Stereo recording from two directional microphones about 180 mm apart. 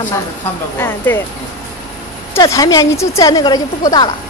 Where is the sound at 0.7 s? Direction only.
15° left (ahead or behind).